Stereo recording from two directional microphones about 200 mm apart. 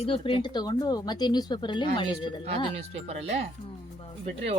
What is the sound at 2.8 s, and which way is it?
Speech, 30° right (ahead or behind).